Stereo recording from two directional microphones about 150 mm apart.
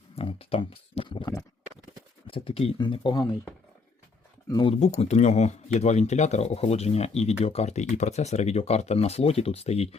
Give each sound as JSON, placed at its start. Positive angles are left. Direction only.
{"t": 0.2, "sound": "speech", "side_deg": 40}
{"t": 1.2, "sound": "speech", "side_deg": 20}
{"t": 2.2, "sound": "speech", "side_deg": 40}
{"t": 4.4, "sound": "speech", "side_deg": 25}
{"t": 4.7, "sound": "speech", "side_deg": 45}